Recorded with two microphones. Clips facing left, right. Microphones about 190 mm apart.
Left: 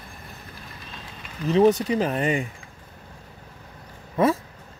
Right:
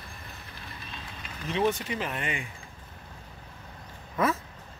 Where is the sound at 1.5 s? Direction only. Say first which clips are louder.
Left 9 dB; 40° left (ahead or behind).